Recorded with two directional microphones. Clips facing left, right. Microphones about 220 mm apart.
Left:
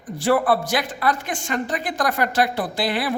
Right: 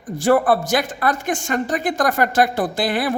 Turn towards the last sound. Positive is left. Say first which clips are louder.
# right 3 dB
turn(degrees=-50)  # may be behind; listen again after turning